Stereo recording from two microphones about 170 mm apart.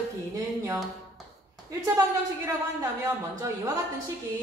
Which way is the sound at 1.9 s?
20° right (ahead or behind).